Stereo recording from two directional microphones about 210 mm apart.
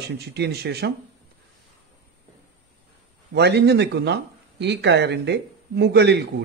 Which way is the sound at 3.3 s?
50° right (ahead or behind).